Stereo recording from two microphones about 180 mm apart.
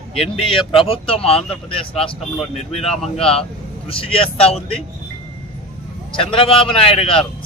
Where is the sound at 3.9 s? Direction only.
30° left (ahead or behind).